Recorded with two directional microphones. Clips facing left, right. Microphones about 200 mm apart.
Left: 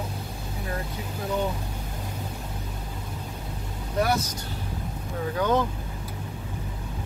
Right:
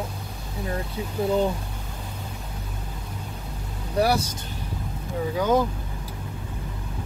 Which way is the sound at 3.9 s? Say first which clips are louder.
Right 3 dB; 30° right (ahead or behind).